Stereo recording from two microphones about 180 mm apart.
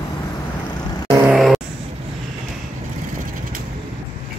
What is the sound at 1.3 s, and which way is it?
Vehicle, centre (ahead or behind).